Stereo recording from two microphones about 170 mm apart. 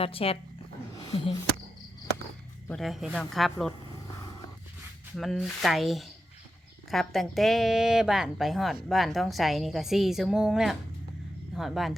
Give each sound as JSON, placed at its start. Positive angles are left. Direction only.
{"t": 0.0, "sound": "speech", "side_deg": 35}
{"t": 2.6, "sound": "a woman's voice", "side_deg": 0}
{"t": 5.1, "sound": "a woman's voice", "side_deg": 0}